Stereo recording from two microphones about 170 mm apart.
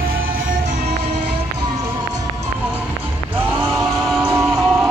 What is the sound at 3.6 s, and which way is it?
Music, centre (ahead or behind).